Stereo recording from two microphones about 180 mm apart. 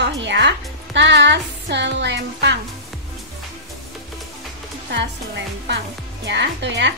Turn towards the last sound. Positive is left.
turn(degrees=-75)  # may be behind; listen again after turning